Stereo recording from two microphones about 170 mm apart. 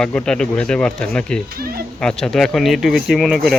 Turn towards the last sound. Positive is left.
turn(degrees=0)  # may be behind; listen again after turning